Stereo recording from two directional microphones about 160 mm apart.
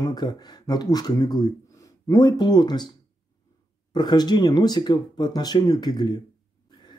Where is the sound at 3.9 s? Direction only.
25° left (ahead or behind).